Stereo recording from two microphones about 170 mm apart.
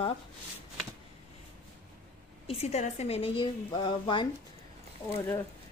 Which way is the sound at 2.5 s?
40° left (ahead or behind).